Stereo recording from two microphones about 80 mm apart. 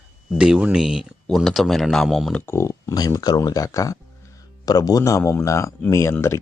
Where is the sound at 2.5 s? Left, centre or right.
Left.